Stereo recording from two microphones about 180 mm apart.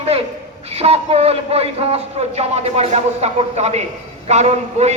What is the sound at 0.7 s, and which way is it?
A man's voice, 35° right (ahead or behind).